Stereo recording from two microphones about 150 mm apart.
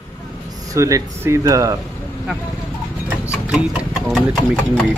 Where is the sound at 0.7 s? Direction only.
20° right (ahead or behind).